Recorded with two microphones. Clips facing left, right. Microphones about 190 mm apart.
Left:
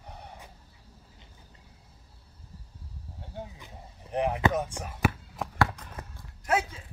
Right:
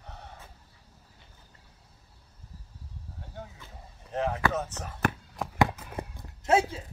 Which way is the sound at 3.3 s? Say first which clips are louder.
Left 3 dB; 15° left (ahead or behind).